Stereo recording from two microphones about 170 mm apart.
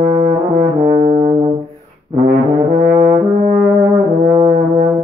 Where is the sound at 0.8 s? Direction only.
40° right (ahead or behind).